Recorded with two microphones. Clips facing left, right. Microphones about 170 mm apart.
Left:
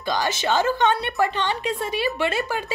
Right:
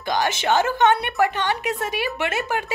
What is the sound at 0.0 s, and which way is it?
A woman's voice, 15° right (ahead or behind).